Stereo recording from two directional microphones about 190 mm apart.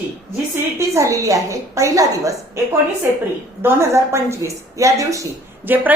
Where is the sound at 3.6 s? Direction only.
15° right (ahead or behind).